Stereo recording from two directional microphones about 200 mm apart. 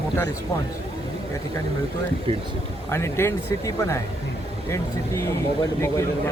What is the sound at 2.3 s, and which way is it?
Speech, 25° right (ahead or behind).